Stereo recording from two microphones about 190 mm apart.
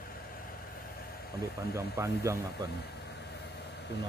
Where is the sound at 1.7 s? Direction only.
15° right (ahead or behind).